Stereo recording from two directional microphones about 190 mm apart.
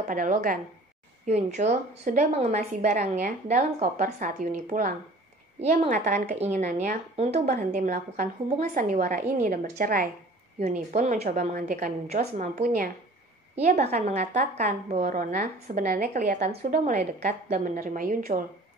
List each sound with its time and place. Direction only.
0.1 s a woman's voice: 45° right (ahead or behind)
1.2 s a woman's voice: 35° right (ahead or behind)
13.6 s a woman's voice: 35° right (ahead or behind)